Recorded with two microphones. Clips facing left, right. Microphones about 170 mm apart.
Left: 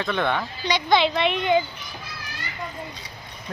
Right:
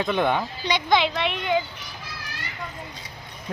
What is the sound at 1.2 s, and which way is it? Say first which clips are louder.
Speech: left 3 dB; centre (ahead or behind).